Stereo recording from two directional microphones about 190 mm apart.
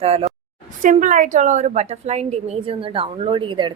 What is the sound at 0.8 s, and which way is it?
A woman's voice, 45° right (ahead or behind).